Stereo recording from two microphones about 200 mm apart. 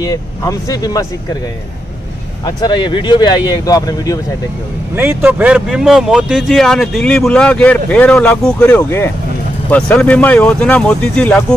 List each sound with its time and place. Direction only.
0.0 s speech: 15° left (ahead or behind)
2.4 s speech: 20° left (ahead or behind)
4.9 s speech: 10° right (ahead or behind)